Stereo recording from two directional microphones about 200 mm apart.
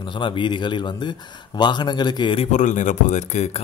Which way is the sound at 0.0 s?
25° left (ahead or behind).